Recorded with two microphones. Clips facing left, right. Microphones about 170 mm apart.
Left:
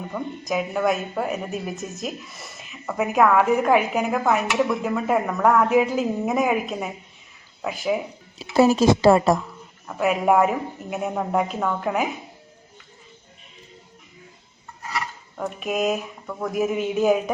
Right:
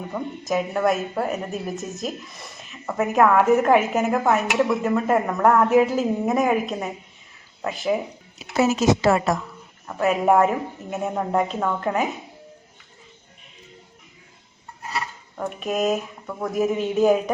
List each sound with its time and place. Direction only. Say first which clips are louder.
0.1 s a woman's voice: right 2 dB; centre (ahead or behind)
8.5 s a woman's voice: left 3 dB; 30° left (ahead or behind)
9.8 s a woman's voice: right 1 dB; centre (ahead or behind)
15.4 s a woman's voice: right 1 dB; centre (ahead or behind)